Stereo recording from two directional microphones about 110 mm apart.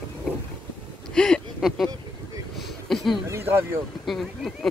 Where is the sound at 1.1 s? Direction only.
5° left (ahead or behind).